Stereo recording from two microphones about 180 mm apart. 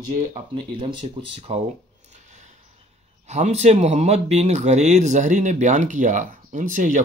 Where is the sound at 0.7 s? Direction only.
30° right (ahead or behind).